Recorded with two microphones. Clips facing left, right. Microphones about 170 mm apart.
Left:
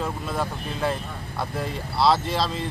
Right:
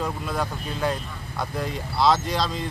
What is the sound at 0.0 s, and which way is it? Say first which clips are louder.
Speech: even; centre (ahead or behind).